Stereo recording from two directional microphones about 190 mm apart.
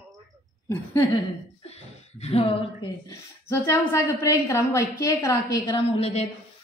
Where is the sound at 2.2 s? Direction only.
30° left (ahead or behind).